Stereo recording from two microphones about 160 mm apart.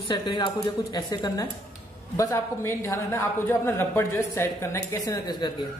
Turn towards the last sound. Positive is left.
turn(degrees=25)  # may be behind; listen again after turning